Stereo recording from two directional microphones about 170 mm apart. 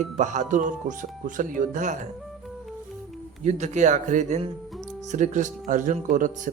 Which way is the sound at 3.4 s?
40° right (ahead or behind).